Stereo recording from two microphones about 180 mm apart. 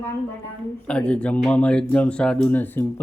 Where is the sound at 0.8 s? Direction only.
5° left (ahead or behind).